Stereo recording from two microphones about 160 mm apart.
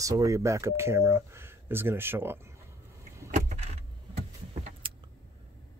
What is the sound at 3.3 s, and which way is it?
Vehicle, 45° right (ahead or behind).